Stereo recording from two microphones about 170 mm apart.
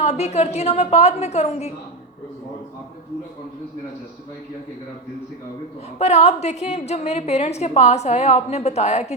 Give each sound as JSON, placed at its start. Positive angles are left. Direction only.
{"t": 0.0, "sound": "a woman's voice", "side_deg": 40}
{"t": 6.0, "sound": "a woman's voice", "side_deg": 40}